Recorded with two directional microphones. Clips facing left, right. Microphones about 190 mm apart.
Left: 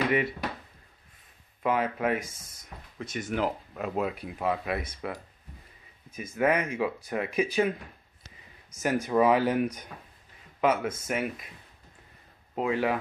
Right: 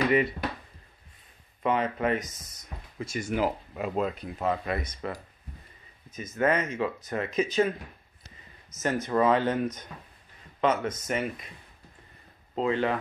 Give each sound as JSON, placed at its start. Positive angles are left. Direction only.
{"t": 1.6, "sound": "speech", "side_deg": 5}
{"t": 3.9, "sound": "speech", "side_deg": 5}
{"t": 8.7, "sound": "speech", "side_deg": 10}
{"t": 12.5, "sound": "speech", "side_deg": 10}